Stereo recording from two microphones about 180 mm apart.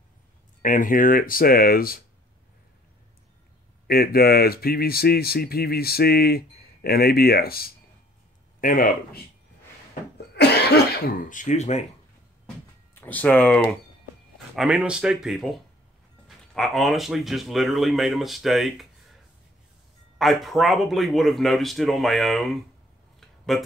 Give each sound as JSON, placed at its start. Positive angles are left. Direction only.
{"t": 0.6, "sound": "speech", "side_deg": 45}
{"t": 3.8, "sound": "speech", "side_deg": 55}
{"t": 10.1, "sound": "cough", "side_deg": 65}
{"t": 12.9, "sound": "speech", "side_deg": 10}
{"t": 20.2, "sound": "speech", "side_deg": 0}
{"t": 23.2, "sound": "a sound", "side_deg": 0}